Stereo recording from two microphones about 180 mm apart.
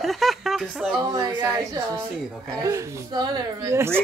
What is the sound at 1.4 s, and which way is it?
Speech, 25° right (ahead or behind).